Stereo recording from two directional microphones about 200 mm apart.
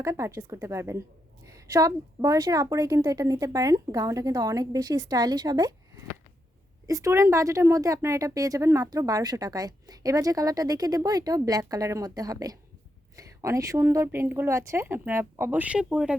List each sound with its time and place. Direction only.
0.0 s speech: 15° right (ahead or behind)